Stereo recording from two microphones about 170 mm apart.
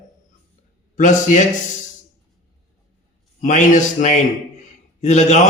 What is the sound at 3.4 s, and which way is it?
A man's voice, 50° left (ahead or behind).